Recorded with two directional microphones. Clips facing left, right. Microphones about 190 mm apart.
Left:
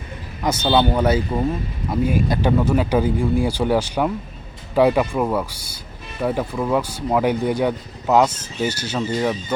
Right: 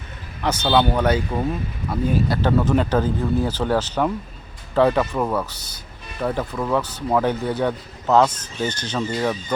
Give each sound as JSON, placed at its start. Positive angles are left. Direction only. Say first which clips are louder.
{"t": 0.4, "sound": "speech", "louder": "left 1 dB", "side_deg": 10}